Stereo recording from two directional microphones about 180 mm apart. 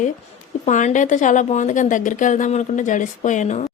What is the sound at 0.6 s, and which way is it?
A woman's voice, 40° left (ahead or behind).